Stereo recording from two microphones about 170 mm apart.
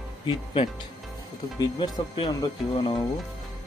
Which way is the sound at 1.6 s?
25° left (ahead or behind).